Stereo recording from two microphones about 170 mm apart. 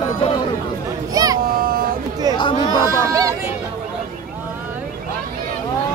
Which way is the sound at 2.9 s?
20° right (ahead or behind).